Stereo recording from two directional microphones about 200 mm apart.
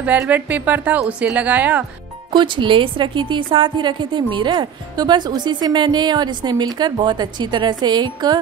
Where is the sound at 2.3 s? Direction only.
25° right (ahead or behind).